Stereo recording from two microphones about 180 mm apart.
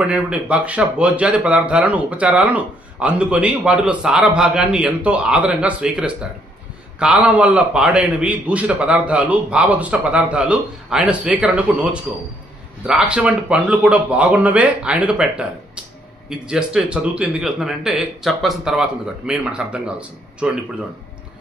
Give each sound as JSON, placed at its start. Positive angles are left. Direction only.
{"t": 0.0, "sound": "a man's voice", "side_deg": -5}